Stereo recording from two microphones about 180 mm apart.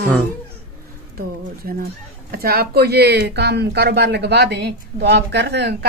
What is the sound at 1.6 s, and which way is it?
Speech, 50° right (ahead or behind).